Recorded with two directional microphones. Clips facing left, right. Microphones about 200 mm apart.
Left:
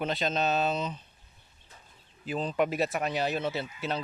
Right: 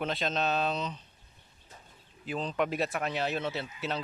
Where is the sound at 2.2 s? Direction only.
5° left (ahead or behind).